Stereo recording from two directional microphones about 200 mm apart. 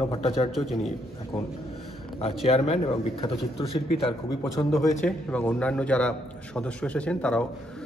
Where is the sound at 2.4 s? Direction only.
30° left (ahead or behind).